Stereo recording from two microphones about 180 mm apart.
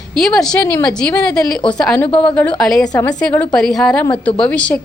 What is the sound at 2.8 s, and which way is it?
Speech, 20° left (ahead or behind).